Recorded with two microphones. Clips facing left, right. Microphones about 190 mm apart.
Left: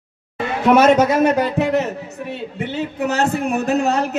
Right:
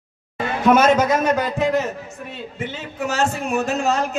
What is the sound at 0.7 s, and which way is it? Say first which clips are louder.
A man's voice: left 7 dB; 65° left (ahead or behind).